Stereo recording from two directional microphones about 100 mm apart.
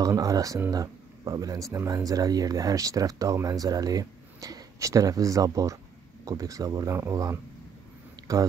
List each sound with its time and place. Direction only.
0.0 s speech: 35° right (ahead or behind)